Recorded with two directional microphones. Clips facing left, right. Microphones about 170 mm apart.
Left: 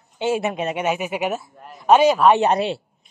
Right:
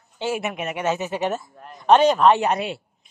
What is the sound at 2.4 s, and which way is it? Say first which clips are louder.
Speech: left 4 dB; 30° left (ahead or behind).